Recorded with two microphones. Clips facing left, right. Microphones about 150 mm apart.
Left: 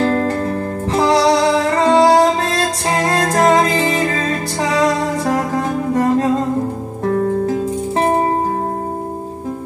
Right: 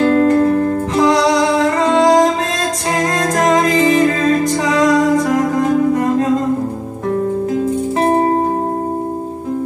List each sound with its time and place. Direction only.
0.0 s music: 35° left (ahead or behind)